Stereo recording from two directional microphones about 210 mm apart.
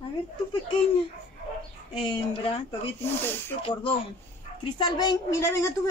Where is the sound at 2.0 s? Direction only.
25° left (ahead or behind).